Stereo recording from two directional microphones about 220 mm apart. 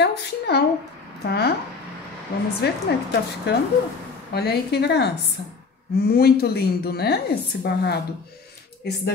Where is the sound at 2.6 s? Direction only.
50° left (ahead or behind).